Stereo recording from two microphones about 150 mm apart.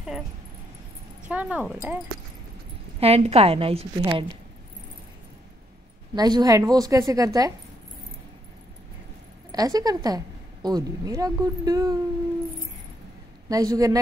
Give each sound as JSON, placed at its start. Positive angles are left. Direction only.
{"t": 1.3, "sound": "speech", "side_deg": -10}
{"t": 3.0, "sound": "a woman's voice", "side_deg": -45}
{"t": 6.1, "sound": "a woman's voice", "side_deg": -25}
{"t": 9.5, "sound": "a woman's voice", "side_deg": -25}
{"t": 13.5, "sound": "a woman's voice", "side_deg": -25}